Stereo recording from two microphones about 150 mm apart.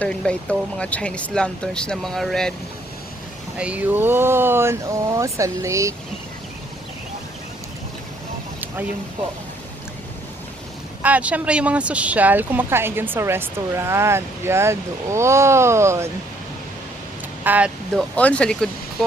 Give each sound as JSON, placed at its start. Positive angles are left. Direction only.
{"t": 0.0, "sound": "speech", "side_deg": 5}
{"t": 3.6, "sound": "a woman's voice", "side_deg": -10}
{"t": 11.0, "sound": "a woman's voice", "side_deg": -10}
{"t": 17.4, "sound": "speech", "side_deg": -10}
{"t": 17.9, "sound": "speech", "side_deg": 10}